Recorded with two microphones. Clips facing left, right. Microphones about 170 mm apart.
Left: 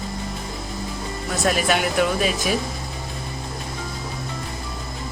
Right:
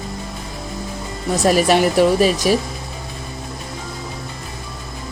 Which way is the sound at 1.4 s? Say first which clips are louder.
Right 7 dB; 35° right (ahead or behind).